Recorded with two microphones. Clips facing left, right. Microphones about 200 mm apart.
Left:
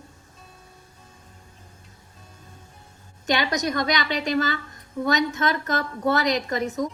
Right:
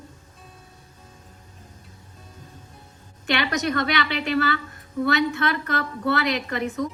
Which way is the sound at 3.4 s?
15° left (ahead or behind).